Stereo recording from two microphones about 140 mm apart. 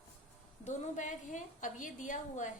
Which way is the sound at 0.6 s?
60° left (ahead or behind).